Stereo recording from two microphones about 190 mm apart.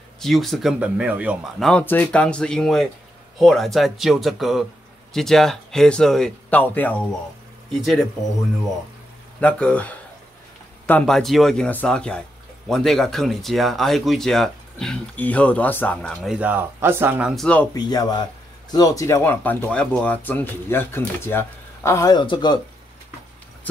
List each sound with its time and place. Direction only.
0.2 s speech: centre (ahead or behind)
9.4 s speech: 5° left (ahead or behind); by 17.3 s 10° right (ahead or behind)
17.4 s speech: 5° left (ahead or behind)
17.7 s speech: 20° left (ahead or behind)